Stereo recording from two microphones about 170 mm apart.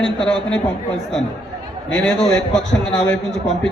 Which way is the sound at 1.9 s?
5° left (ahead or behind).